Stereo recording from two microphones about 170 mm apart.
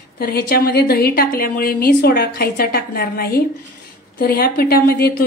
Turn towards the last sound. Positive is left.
turn(degrees=60)  # may be behind; listen again after turning